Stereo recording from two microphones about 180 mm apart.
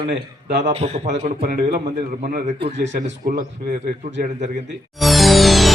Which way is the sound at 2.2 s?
40° right (ahead or behind).